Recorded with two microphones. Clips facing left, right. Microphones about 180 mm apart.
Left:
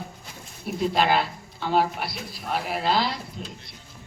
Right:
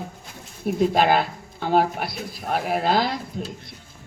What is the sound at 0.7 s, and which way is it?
Speech, 50° right (ahead or behind).